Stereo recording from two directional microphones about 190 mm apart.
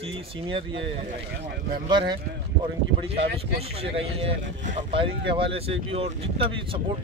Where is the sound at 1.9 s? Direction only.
25° right (ahead or behind).